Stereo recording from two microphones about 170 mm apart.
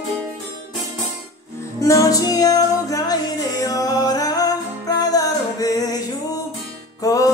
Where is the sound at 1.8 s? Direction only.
20° left (ahead or behind).